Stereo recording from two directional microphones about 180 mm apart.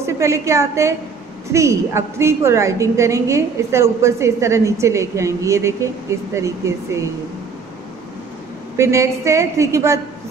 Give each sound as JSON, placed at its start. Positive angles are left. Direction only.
{"t": 0.0, "sound": "a woman's voice", "side_deg": -15}
{"t": 8.7, "sound": "a woman's voice", "side_deg": -15}